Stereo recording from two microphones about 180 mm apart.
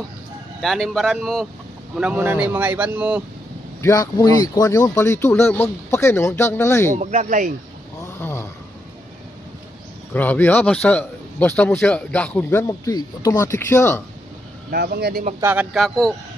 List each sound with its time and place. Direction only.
0.6 s speech: centre (ahead or behind)
3.8 s a man's voice: 20° left (ahead or behind)
6.9 s speech: 45° right (ahead or behind)
8.2 s a sound: 15° left (ahead or behind)
10.1 s a man's voice: 10° left (ahead or behind)
14.7 s speech: 60° right (ahead or behind)
15.4 s speech: 10° right (ahead or behind)